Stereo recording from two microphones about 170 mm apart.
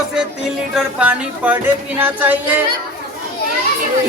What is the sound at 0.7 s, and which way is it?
Speech, 5° right (ahead or behind).